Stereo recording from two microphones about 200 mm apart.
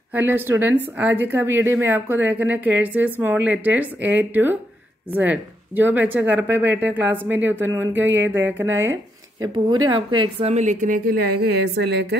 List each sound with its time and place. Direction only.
0.1 s a woman's voice: 10° right (ahead or behind)
9.8 s a woman's voice: 25° right (ahead or behind); by 12.2 s 55° right (ahead or behind)